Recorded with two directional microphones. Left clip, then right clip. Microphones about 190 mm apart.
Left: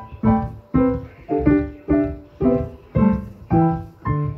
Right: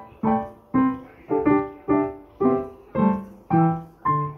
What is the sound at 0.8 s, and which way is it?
Music, 25° left (ahead or behind).